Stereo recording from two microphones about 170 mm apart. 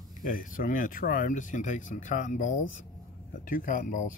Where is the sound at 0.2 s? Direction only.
50° left (ahead or behind).